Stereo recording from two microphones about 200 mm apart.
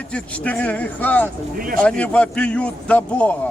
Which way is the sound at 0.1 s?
5° left (ahead or behind).